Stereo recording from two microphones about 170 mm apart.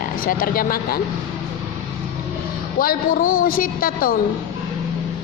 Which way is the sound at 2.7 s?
60° left (ahead or behind).